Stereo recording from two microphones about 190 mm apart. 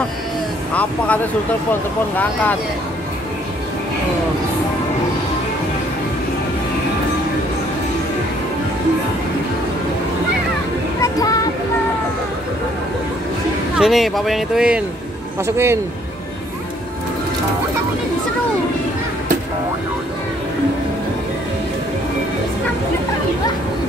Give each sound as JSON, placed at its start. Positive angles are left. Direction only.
{"t": 0.7, "sound": "speech", "side_deg": 5}
{"t": 11.0, "sound": "music", "side_deg": 20}
{"t": 13.7, "sound": "speech", "side_deg": 0}